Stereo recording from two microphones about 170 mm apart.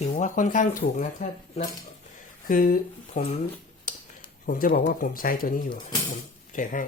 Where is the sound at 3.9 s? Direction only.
55° left (ahead or behind).